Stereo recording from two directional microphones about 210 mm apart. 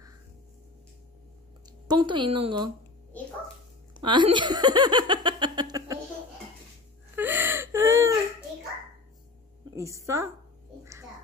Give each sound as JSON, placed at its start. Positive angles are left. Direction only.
{"t": 1.9, "sound": "speech", "side_deg": -20}
{"t": 4.0, "sound": "speech", "side_deg": -20}
{"t": 7.2, "sound": "whimper", "side_deg": -10}
{"t": 9.8, "sound": "a woman's voice", "side_deg": -15}